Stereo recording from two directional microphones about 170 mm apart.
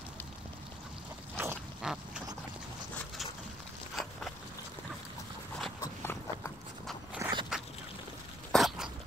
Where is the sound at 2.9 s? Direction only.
Centre (ahead or behind).